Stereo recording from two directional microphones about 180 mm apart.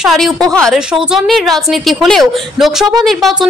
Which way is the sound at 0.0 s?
Centre (ahead or behind).